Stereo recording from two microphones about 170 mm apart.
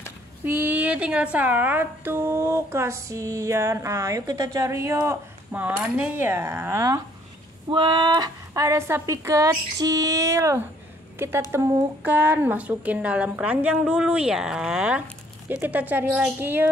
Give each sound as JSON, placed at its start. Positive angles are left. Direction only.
{"t": 0.5, "sound": "a woman's voice", "side_deg": -10}
{"t": 7.7, "sound": "a woman's voice", "side_deg": -25}